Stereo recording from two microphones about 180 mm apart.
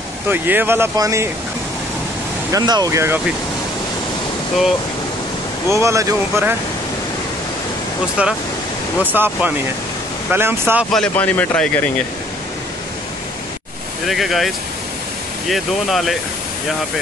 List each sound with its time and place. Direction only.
0.3 s speech: 10° right (ahead or behind)
2.5 s speech: 20° right (ahead or behind)
5.8 s speech: 15° right (ahead or behind)
8.2 s speech: 5° right (ahead or behind)
10.9 s speech: 5° left (ahead or behind)
14.0 s speech: centre (ahead or behind)